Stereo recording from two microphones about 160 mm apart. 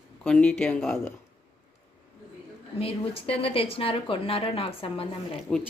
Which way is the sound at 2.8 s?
35° left (ahead or behind).